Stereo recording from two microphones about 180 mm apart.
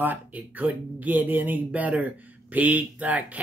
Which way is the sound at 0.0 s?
10° right (ahead or behind).